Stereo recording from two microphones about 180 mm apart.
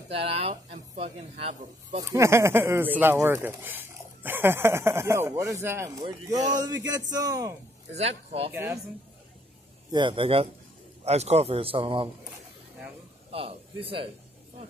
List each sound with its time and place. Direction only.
0.1 s speech: 35° right (ahead or behind)
2.0 s a man's voice: 15° right (ahead or behind)
7.9 s speech: 35° right (ahead or behind)
9.8 s a man's voice: 25° right (ahead or behind)
13.3 s a man's voice: 30° right (ahead or behind)